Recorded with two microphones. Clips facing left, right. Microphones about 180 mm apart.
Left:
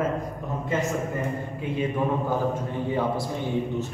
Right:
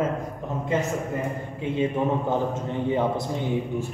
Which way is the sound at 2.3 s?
25° right (ahead or behind).